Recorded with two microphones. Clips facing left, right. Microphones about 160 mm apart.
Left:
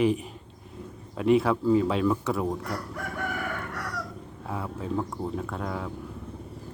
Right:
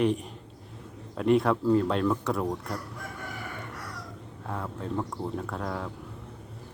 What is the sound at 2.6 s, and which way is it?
Chicken, 75° left (ahead or behind).